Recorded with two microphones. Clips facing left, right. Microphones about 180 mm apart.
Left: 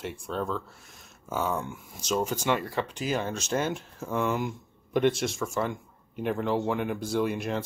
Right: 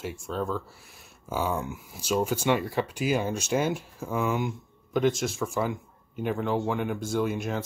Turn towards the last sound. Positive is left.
turn(degrees=0)  # may be behind; listen again after turning